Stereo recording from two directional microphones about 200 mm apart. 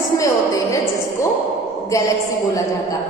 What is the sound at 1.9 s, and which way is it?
Speech, 15° left (ahead or behind).